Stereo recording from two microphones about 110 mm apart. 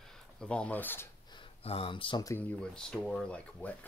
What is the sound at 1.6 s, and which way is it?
Speech, 60° left (ahead or behind).